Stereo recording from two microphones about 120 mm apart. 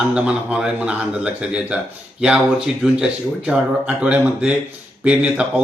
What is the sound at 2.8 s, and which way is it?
A man's voice, 10° right (ahead or behind).